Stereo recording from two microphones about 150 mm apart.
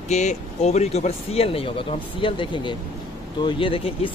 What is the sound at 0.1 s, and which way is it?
Speech, 50° left (ahead or behind).